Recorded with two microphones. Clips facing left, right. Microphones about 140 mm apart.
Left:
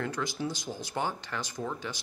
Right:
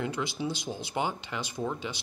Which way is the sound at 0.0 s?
15° right (ahead or behind).